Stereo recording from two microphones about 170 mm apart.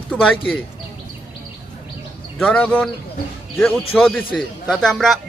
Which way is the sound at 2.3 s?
5° left (ahead or behind).